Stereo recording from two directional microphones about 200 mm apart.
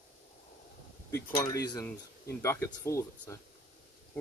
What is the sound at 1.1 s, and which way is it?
Speech, 15° left (ahead or behind).